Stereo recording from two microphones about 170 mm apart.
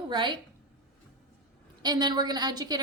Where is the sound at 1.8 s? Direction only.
25° right (ahead or behind).